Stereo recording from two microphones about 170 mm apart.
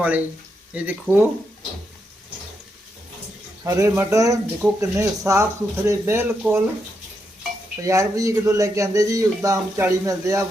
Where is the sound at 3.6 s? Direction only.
15° right (ahead or behind).